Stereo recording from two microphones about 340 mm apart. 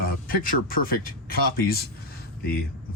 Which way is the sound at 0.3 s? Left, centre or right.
Left.